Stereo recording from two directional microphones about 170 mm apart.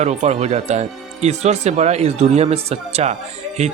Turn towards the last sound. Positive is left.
turn(degrees=-40)  # may be behind; listen again after turning